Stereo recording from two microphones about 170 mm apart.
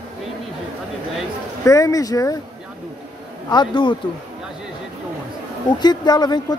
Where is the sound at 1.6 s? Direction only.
20° left (ahead or behind).